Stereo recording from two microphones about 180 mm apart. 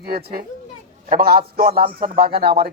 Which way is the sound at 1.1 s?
55° right (ahead or behind).